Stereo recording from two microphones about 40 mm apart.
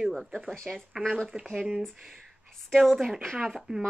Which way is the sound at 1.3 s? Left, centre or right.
Centre.